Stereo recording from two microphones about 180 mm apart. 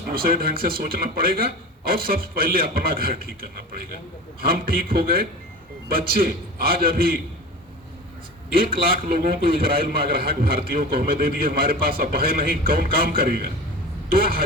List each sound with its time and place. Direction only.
0.1 s a man's voice: 55° right (ahead or behind)
4.4 s a man's voice: 55° right (ahead or behind)
8.5 s a man's voice: 55° right (ahead or behind)